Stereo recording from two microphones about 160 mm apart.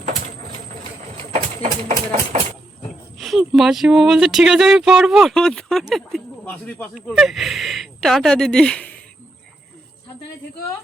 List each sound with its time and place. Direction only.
1.6 s speech: 55° right (ahead or behind)
3.2 s speech: centre (ahead or behind)